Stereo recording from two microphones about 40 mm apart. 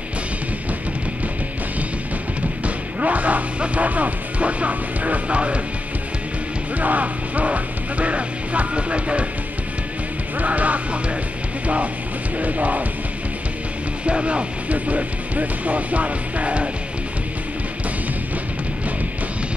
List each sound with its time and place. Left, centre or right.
2.6 s speech: right
6.8 s speech: right
10.4 s speech: right
14.0 s speech: right